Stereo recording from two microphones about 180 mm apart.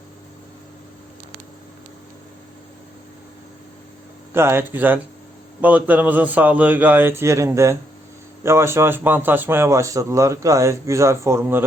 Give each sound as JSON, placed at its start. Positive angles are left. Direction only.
{"t": 4.4, "sound": "a man's voice", "side_deg": -15}